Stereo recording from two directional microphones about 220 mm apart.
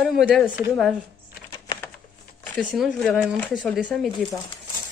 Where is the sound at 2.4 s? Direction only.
5° left (ahead or behind).